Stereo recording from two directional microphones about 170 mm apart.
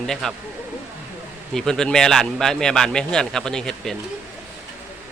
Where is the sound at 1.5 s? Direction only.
5° left (ahead or behind).